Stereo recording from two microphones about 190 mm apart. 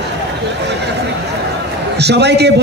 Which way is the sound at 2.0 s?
60° right (ahead or behind).